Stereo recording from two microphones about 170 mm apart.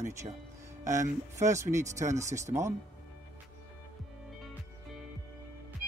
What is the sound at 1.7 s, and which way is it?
Speech, 15° right (ahead or behind).